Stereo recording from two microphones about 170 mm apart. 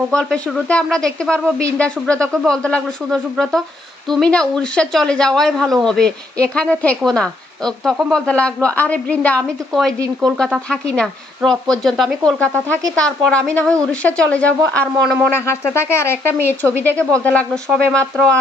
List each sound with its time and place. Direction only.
0.1 s speech: 5° left (ahead or behind)
2.1 s speech: 15° right (ahead or behind)
2.4 s a woman's voice: 5° left (ahead or behind)
15.3 s a woman's voice: 15° left (ahead or behind)